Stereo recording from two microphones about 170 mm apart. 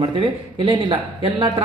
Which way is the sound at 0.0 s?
30° right (ahead or behind).